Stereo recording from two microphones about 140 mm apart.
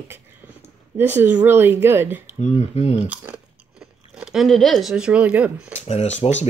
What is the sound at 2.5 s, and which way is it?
Speech, 50° left (ahead or behind).